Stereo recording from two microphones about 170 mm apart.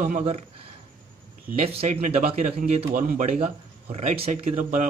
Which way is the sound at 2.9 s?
50° right (ahead or behind).